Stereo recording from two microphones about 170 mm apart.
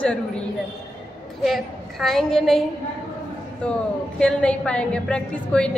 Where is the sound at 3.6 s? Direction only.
5° left (ahead or behind).